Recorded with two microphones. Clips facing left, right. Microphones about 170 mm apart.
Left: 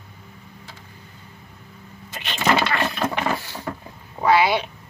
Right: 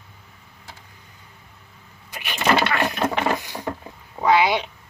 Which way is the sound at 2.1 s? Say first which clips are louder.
Left 1 dB; 15° right (ahead or behind).